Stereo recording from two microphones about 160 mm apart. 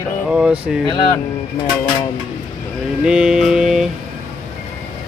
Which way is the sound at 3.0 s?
5° right (ahead or behind).